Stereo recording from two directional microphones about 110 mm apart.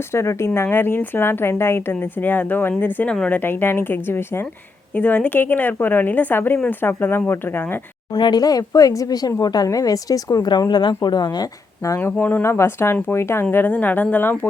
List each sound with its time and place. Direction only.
0.1 s speech: 25° left (ahead or behind)
8.2 s a woman's voice: 40° left (ahead or behind)
11.9 s speech: 15° left (ahead or behind)